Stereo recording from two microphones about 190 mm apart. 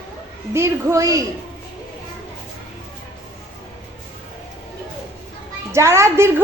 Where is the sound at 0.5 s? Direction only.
15° right (ahead or behind).